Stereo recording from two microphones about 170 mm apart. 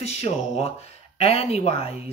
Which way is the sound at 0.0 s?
40° left (ahead or behind).